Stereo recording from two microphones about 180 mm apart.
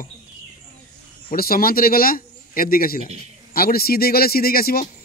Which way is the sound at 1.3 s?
55° left (ahead or behind).